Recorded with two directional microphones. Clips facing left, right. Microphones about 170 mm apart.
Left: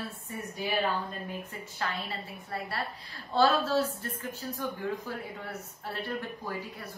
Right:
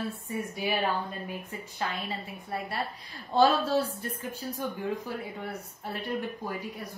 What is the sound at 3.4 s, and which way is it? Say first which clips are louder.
A woman's voice: right 2 dB; 10° right (ahead or behind).